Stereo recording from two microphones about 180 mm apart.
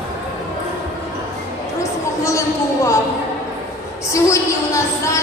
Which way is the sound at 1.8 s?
15° left (ahead or behind).